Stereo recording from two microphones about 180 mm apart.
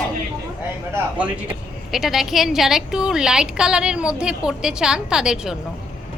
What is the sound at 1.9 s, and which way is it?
A woman's voice, centre (ahead or behind).